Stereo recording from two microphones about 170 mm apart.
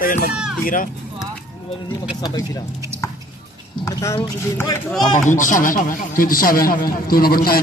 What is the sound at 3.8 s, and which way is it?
Speech, 20° left (ahead or behind).